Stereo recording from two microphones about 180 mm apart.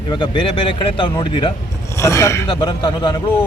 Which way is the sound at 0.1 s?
25° left (ahead or behind).